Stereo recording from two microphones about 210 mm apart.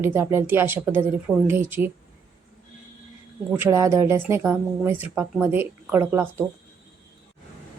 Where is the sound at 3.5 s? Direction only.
10° right (ahead or behind).